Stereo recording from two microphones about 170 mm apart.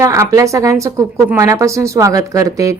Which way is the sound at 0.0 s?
20° right (ahead or behind).